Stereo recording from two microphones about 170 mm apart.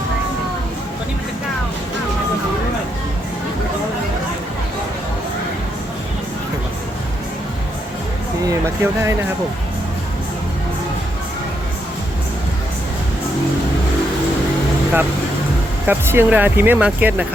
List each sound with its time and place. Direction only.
8.6 s speech: 15° right (ahead or behind)
15.9 s speech: 10° right (ahead or behind)